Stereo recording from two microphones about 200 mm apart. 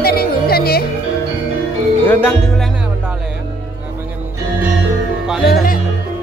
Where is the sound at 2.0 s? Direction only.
5° left (ahead or behind).